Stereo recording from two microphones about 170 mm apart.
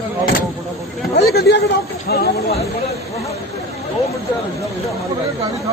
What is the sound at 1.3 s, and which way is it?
Speech, 65° left (ahead or behind).